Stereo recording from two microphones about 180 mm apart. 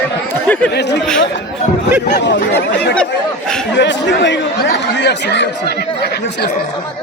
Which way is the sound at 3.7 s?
75° left (ahead or behind).